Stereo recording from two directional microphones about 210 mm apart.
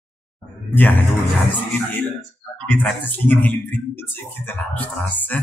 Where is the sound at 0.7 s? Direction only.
10° left (ahead or behind).